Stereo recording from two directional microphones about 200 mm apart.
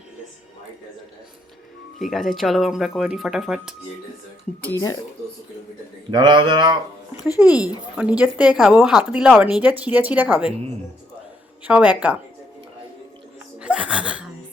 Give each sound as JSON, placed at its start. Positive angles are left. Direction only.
{"t": 2.0, "sound": "speech", "side_deg": 0}
{"t": 6.1, "sound": "speech", "side_deg": -20}
{"t": 7.3, "sound": "speech", "side_deg": -5}
{"t": 11.6, "sound": "speech", "side_deg": -5}
{"t": 13.6, "sound": "laughter", "side_deg": -5}